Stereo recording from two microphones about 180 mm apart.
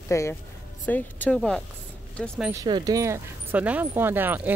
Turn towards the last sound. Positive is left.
turn(degrees=-10)  # may be behind; listen again after turning